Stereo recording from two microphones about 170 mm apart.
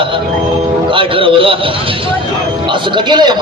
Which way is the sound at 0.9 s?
30° right (ahead or behind).